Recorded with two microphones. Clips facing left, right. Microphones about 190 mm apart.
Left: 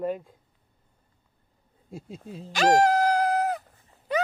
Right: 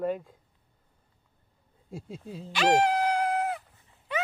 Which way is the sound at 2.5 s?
40° left (ahead or behind).